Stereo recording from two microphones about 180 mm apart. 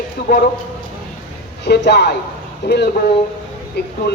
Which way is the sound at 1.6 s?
70° left (ahead or behind).